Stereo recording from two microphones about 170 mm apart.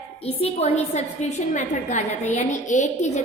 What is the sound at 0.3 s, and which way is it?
A woman's voice, 35° left (ahead or behind).